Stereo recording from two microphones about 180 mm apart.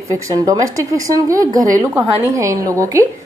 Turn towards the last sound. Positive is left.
turn(degrees=-20)  # may be behind; listen again after turning